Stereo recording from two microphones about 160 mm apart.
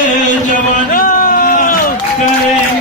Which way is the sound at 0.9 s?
60° left (ahead or behind).